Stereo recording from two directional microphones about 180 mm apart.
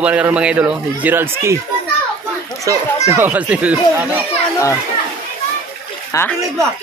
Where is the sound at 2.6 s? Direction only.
15° right (ahead or behind).